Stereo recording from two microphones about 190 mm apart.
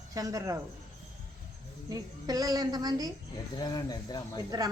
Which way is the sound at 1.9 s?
20° right (ahead or behind).